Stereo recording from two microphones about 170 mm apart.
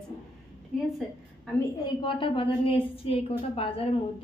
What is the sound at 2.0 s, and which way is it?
A woman's voice, 30° left (ahead or behind).